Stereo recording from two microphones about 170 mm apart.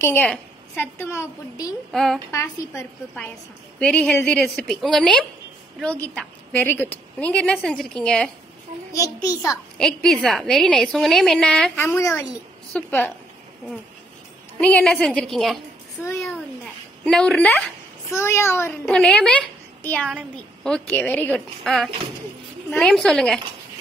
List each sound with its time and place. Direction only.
0.0 s a woman's voice: 10° left (ahead or behind)
1.9 s a woman's voice: centre (ahead or behind)
2.3 s a woman's voice: 15° left (ahead or behind)
8.9 s a child's voice: 20° left (ahead or behind)
9.8 s a woman's voice: 5° left (ahead or behind)
11.8 s a woman's voice: 15° left (ahead or behind)
14.6 s a woman's voice: 5° left (ahead or behind)
17.0 s a woman's voice: 5° left (ahead or behind)
18.9 s a woman's voice: 5° left (ahead or behind)